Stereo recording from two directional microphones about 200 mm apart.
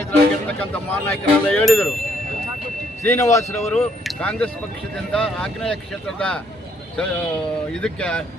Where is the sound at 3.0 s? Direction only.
15° left (ahead or behind).